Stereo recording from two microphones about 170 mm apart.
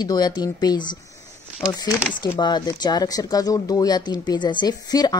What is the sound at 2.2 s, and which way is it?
A woman's voice, 25° left (ahead or behind).